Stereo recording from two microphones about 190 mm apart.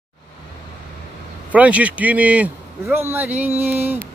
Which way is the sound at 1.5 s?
5° right (ahead or behind).